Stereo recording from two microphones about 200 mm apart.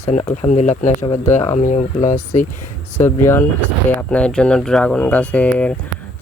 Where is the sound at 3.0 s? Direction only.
10° left (ahead or behind).